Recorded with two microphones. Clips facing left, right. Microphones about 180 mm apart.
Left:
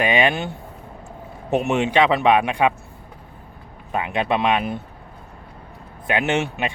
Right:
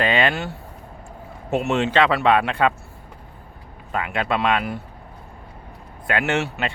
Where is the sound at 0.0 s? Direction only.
15° left (ahead or behind).